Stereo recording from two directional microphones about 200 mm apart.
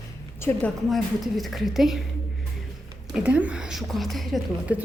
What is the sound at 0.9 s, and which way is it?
A woman's voice, centre (ahead or behind).